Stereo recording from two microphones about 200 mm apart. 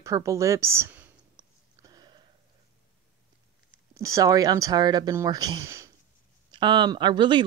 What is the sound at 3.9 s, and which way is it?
Speech, 15° right (ahead or behind).